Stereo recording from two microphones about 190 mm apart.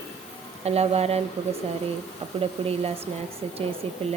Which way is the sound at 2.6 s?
30° right (ahead or behind).